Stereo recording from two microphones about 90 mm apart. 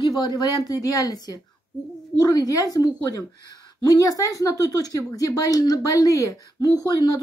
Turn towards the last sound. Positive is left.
turn(degrees=40)  # may be behind; listen again after turning